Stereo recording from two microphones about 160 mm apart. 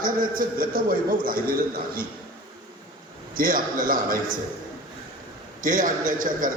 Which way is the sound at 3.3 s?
60° right (ahead or behind).